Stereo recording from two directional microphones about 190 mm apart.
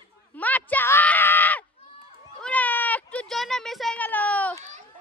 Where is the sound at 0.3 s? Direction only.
10° left (ahead or behind).